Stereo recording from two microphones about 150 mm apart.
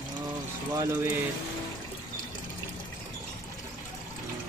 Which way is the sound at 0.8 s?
20° right (ahead or behind).